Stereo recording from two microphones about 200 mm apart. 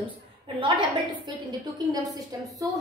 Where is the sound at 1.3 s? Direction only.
20° right (ahead or behind).